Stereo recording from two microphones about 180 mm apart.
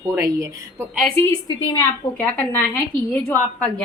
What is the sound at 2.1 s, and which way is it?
A woman's voice, 10° left (ahead or behind).